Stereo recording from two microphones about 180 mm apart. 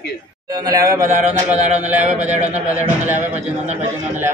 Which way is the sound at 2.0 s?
40° right (ahead or behind).